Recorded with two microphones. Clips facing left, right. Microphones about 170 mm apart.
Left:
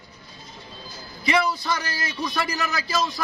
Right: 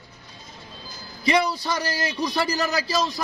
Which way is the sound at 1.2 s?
35° right (ahead or behind).